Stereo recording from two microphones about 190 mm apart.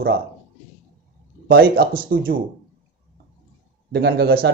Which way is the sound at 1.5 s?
50° right (ahead or behind).